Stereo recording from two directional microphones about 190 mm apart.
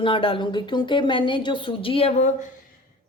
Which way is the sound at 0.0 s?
25° left (ahead or behind).